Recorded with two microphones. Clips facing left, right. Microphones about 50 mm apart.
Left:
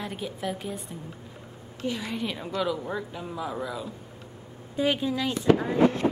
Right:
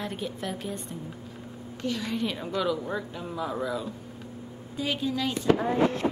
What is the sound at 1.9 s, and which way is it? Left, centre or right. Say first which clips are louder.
Speech: right 1 dB; centre.